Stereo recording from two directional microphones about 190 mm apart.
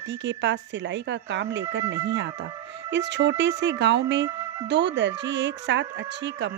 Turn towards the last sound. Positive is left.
turn(degrees=-70)  # may be behind; listen again after turning